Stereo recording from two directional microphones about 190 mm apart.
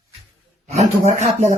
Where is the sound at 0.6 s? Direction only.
35° right (ahead or behind).